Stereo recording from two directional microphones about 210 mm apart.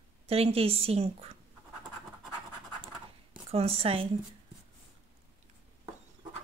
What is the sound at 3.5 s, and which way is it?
Speech, 30° right (ahead or behind).